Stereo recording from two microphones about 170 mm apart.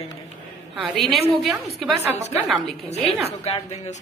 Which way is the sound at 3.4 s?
45° left (ahead or behind).